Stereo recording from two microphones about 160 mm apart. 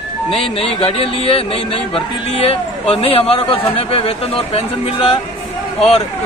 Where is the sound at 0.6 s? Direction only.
35° left (ahead or behind).